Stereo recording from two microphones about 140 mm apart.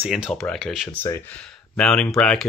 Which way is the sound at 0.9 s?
15° left (ahead or behind).